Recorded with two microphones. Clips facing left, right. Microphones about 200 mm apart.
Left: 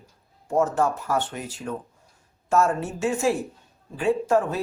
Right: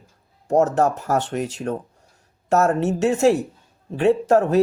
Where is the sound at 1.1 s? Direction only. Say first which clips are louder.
Right 5 dB; 75° right (ahead or behind).